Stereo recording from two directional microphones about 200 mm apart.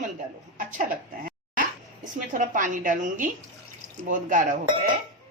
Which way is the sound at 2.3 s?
40° right (ahead or behind).